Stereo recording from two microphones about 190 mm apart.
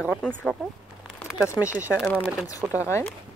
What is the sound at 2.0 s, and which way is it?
Speech, 5° left (ahead or behind).